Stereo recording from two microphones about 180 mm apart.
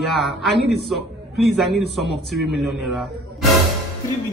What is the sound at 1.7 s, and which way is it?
Speech, 65° left (ahead or behind).